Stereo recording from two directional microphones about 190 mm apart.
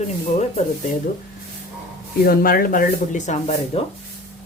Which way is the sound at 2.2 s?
50° left (ahead or behind).